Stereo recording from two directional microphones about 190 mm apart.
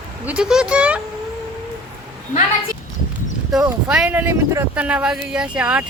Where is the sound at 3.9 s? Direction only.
5° right (ahead or behind).